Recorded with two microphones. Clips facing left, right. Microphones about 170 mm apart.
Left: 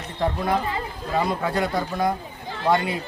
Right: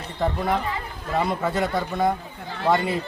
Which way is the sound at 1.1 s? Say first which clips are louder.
Even; centre (ahead or behind).